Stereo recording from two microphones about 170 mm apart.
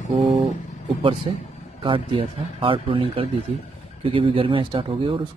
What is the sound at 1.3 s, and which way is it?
Speech, 30° right (ahead or behind).